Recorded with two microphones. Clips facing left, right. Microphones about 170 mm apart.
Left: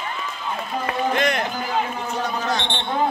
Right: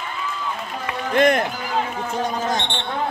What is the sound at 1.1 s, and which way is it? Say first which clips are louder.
Speech: right 8 dB; 50° right (ahead or behind).